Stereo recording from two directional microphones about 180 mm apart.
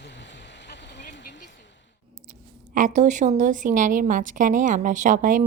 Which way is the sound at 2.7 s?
45° right (ahead or behind).